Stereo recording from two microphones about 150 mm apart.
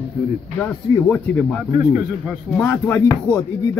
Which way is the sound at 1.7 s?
15° right (ahead or behind).